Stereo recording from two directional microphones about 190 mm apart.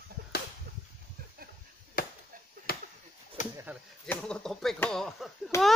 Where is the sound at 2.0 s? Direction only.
50° left (ahead or behind).